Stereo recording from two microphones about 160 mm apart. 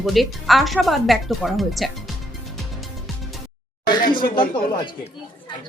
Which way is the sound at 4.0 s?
60° left (ahead or behind).